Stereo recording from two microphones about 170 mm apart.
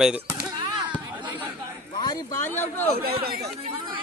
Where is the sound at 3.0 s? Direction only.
65° right (ahead or behind).